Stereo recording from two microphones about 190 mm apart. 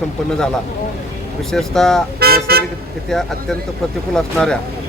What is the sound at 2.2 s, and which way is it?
Toot, 55° right (ahead or behind).